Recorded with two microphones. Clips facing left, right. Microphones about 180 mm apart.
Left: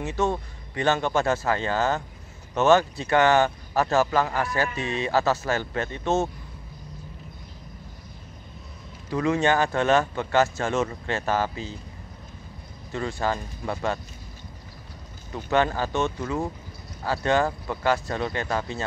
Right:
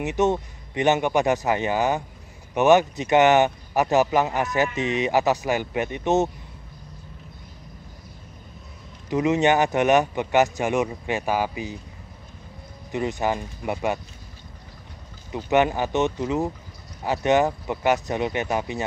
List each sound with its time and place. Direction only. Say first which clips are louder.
0.0 s speech: right 4 dB; 20° right (ahead or behind)
9.1 s speech: right 3 dB; 20° right (ahead or behind)
12.9 s speech: right 3 dB; 20° right (ahead or behind)
15.3 s speech: right 3 dB; 20° right (ahead or behind)